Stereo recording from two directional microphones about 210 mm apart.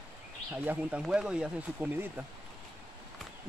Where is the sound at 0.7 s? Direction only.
5° right (ahead or behind).